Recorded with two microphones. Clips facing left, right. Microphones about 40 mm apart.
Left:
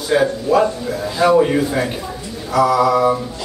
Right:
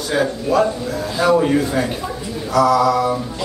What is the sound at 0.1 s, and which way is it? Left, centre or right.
A man's voice, centre.